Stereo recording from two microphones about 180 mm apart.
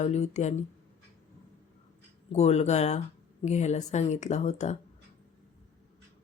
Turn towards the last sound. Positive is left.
turn(degrees=40)  # may be behind; listen again after turning